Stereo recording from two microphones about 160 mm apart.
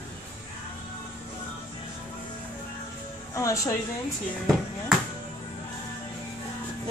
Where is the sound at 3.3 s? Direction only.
20° left (ahead or behind).